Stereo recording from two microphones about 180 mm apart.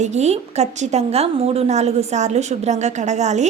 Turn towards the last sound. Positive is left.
turn(degrees=-40)  # may be behind; listen again after turning